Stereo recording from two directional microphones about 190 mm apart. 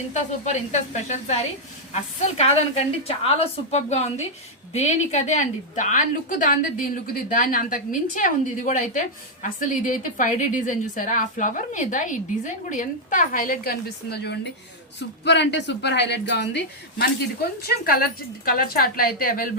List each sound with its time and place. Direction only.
0.1 s a woman's voice: 40° left (ahead or behind); by 17.1 s 65° left (ahead or behind)
17.6 s a woman's voice: 55° left (ahead or behind)